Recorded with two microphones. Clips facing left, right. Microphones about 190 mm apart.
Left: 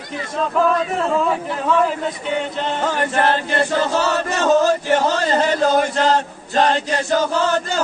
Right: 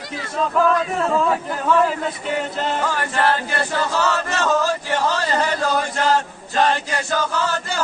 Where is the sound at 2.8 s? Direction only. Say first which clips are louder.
Left 4 dB; 20° left (ahead or behind).